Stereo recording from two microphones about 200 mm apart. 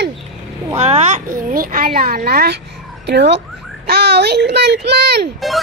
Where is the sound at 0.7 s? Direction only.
35° right (ahead or behind); by 5.3 s 55° right (ahead or behind).